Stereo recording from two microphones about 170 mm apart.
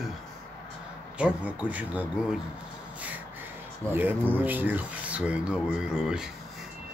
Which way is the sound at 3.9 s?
10° right (ahead or behind).